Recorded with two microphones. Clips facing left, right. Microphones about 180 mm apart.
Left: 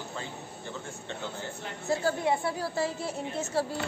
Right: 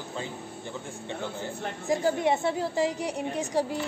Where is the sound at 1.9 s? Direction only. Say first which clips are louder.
Right 2 dB; 20° right (ahead or behind).